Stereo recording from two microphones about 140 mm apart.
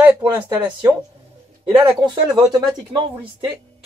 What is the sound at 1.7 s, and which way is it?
Speech, 30° right (ahead or behind).